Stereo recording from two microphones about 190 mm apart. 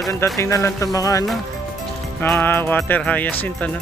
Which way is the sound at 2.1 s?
10° left (ahead or behind).